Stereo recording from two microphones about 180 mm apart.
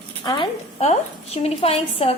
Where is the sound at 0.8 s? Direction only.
35° left (ahead or behind).